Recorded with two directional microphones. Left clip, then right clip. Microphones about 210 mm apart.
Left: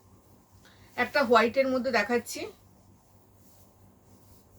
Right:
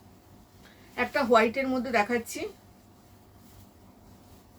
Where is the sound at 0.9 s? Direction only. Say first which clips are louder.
Even; 15° left (ahead or behind).